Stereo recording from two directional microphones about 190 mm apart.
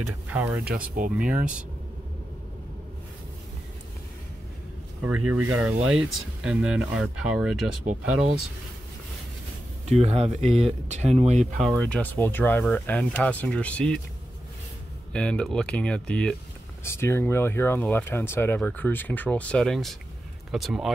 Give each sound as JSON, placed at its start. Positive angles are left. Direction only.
{"t": 0.0, "sound": "speech", "side_deg": -10}
{"t": 0.7, "sound": "speech", "side_deg": -45}
{"t": 1.1, "sound": "speech", "side_deg": -5}
{"t": 5.0, "sound": "speech", "side_deg": -5}
{"t": 9.8, "sound": "speech", "side_deg": -35}
{"t": 11.8, "sound": "speech", "side_deg": 10}
{"t": 15.1, "sound": "speech", "side_deg": 5}